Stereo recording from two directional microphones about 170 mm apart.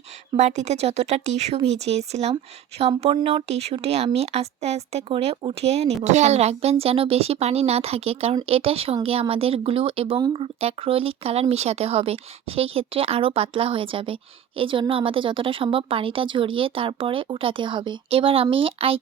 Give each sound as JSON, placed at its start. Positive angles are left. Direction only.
{"t": 0.3, "sound": "speech", "side_deg": -40}